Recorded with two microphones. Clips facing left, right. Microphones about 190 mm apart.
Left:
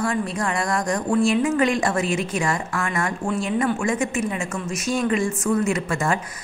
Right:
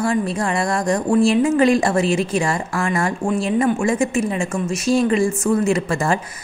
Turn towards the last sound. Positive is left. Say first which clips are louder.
# right 4 dB
turn(degrees=-30)  # may be behind; listen again after turning